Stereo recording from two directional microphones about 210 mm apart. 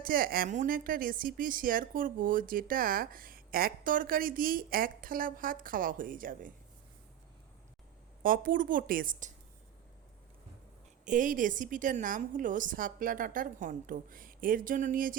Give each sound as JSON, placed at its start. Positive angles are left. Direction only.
{"t": 0.0, "sound": "speech", "side_deg": -45}
{"t": 8.2, "sound": "speech", "side_deg": -40}
{"t": 11.0, "sound": "speech", "side_deg": -40}